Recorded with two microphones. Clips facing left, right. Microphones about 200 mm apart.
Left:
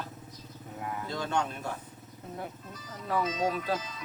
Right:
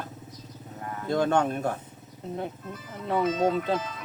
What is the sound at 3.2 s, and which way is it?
Speech, 55° right (ahead or behind).